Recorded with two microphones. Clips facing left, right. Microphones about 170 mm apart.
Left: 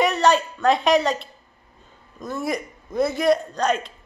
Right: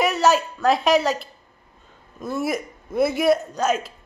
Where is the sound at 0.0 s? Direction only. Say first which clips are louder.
Even; 5° right (ahead or behind).